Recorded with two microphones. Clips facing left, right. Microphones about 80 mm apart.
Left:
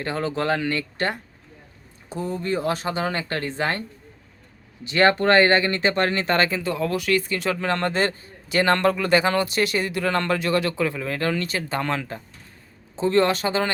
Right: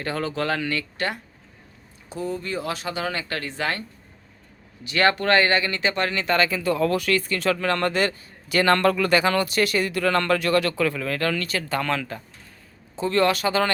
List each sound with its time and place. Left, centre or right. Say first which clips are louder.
0.0 s speech: left 1 dB; left